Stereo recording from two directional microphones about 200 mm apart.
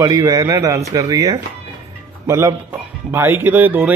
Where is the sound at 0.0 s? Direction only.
20° right (ahead or behind).